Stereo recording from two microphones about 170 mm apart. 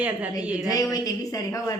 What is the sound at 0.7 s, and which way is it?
A woman's voice, 20° left (ahead or behind).